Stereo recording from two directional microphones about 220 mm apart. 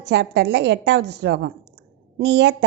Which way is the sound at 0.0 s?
50° right (ahead or behind).